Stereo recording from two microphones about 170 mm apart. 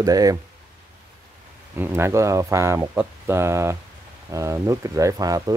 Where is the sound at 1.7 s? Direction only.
15° right (ahead or behind).